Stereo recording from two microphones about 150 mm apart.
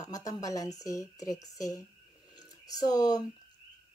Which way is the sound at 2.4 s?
25° left (ahead or behind).